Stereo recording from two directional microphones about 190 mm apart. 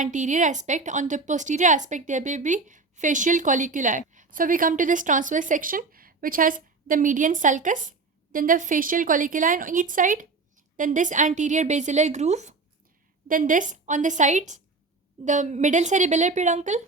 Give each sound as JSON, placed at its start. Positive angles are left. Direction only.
{"t": 0.0, "sound": "a woman's voice", "side_deg": -40}